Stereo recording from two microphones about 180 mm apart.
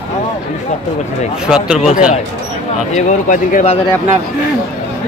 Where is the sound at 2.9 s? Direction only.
45° left (ahead or behind).